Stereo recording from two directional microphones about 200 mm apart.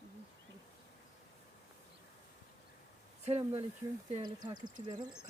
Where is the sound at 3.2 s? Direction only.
30° right (ahead or behind).